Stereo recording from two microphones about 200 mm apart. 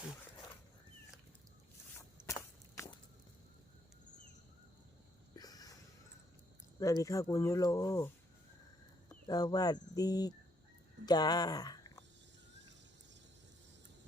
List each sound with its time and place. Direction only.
2.0 s walk: 15° left (ahead or behind)
5.3 s a sound: 20° left (ahead or behind)
6.7 s speech: 15° left (ahead or behind)